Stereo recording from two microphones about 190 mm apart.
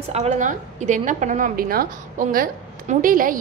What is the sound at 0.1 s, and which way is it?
A woman's voice, 40° right (ahead or behind).